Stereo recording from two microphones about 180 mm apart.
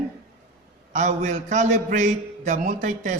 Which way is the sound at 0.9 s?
40° right (ahead or behind).